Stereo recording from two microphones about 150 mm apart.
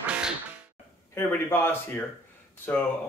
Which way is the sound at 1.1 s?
15° left (ahead or behind).